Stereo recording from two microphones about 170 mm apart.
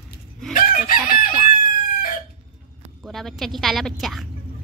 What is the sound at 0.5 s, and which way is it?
Chicken, 55° left (ahead or behind).